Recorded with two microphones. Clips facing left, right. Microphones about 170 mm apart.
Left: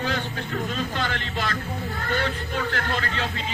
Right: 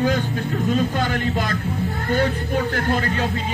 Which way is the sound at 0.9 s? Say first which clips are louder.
Right 6 dB; 45° right (ahead or behind).